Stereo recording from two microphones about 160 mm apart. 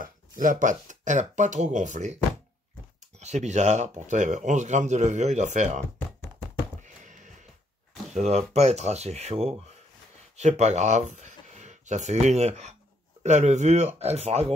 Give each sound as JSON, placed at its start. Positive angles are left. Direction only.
{"t": 0.0, "sound": "speech", "side_deg": -55}
{"t": 3.2, "sound": "speech", "side_deg": -45}
{"t": 6.8, "sound": "a sound", "side_deg": -50}
{"t": 8.1, "sound": "speech", "side_deg": -45}